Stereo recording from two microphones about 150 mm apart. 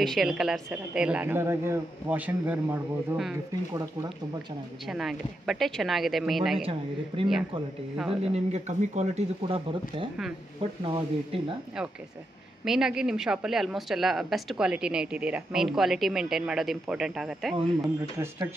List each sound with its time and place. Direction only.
0.0 s speech: centre (ahead or behind)
4.8 s speech: centre (ahead or behind)
6.6 s speech: 35° right (ahead or behind)
12.6 s speech: 5° right (ahead or behind)
17.8 s speech: 20° right (ahead or behind)